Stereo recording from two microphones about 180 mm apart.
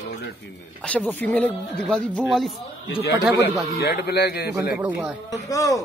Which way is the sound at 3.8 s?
65° left (ahead or behind).